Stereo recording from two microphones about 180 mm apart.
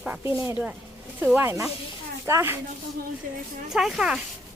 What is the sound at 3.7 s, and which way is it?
Speech, 5° right (ahead or behind).